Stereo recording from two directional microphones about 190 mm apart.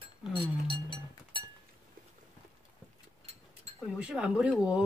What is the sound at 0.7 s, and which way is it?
Music, 25° right (ahead or behind).